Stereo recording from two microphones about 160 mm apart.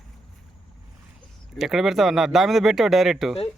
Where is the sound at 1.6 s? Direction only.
Centre (ahead or behind).